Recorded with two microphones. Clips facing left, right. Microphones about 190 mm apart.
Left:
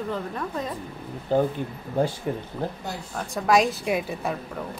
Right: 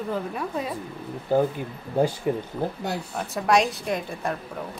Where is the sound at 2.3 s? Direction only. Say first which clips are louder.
Right 3 dB; 10° right (ahead or behind); by 4.3 s 5° left (ahead or behind).